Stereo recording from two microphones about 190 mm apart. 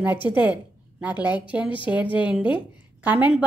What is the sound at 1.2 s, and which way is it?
Speech, 20° left (ahead or behind).